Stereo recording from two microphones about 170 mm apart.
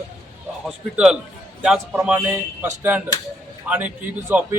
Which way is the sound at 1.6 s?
5° right (ahead or behind).